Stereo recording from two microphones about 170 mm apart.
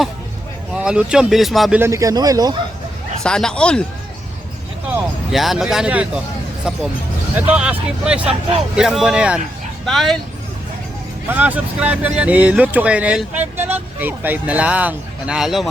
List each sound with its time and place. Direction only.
0.7 s speech: 5° right (ahead or behind)
1.8 s speech: 20° right (ahead or behind)
3.2 s speech: 5° left (ahead or behind)
4.9 s speech: centre (ahead or behind)
11.3 s speech: 10° right (ahead or behind)